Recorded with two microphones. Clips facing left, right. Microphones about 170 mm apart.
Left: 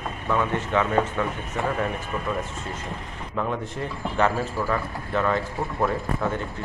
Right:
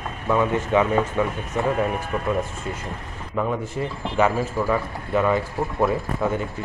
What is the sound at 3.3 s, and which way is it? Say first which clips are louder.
A man's voice: right 3 dB; 5° right (ahead or behind).